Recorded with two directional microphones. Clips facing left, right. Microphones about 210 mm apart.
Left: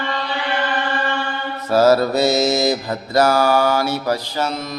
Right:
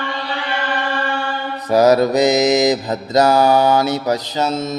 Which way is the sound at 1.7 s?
15° right (ahead or behind).